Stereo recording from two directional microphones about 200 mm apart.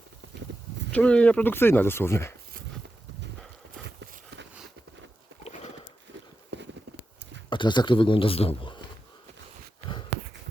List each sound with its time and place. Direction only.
0.9 s speech: 5° left (ahead or behind)
5.4 s bird: 35° left (ahead or behind)
6.5 s a sound: 60° right (ahead or behind)
7.5 s a man's voice: 20° left (ahead or behind)